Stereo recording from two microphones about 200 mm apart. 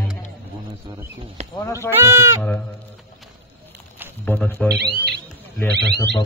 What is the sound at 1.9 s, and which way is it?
Speech, 10° right (ahead or behind).